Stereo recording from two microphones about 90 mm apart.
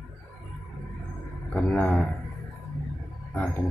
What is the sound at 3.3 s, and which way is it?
Speech, 15° left (ahead or behind).